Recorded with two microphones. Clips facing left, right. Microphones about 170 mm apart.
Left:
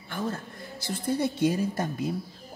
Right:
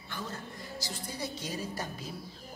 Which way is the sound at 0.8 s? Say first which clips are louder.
Left 13 dB; 55° left (ahead or behind).